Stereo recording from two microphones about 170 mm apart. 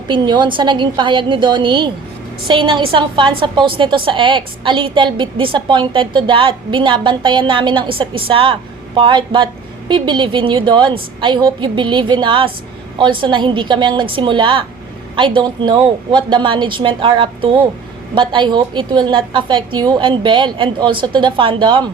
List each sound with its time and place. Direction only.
0.1 s a woman's voice: 25° right (ahead or behind)